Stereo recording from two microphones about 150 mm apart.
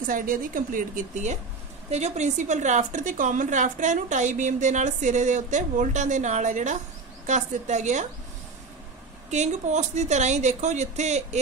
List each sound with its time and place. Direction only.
0.0 s a woman's voice: 65° right (ahead or behind)
9.3 s a woman's voice: 50° right (ahead or behind)